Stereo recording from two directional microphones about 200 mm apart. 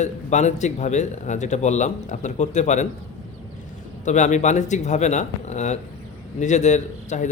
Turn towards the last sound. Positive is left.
turn(degrees=35)  # may be behind; listen again after turning